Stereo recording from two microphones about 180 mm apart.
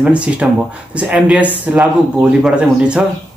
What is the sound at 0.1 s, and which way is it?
A man's voice, 5° right (ahead or behind).